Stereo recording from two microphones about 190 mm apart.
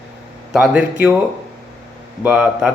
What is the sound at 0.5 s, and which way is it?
Speech, 5° right (ahead or behind).